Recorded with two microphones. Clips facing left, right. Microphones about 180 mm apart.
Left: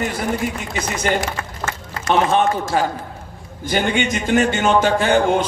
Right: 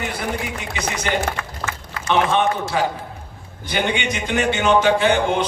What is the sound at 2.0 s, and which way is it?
A man's voice, 45° left (ahead or behind).